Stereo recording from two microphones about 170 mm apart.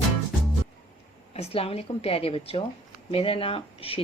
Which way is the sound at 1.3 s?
35° left (ahead or behind).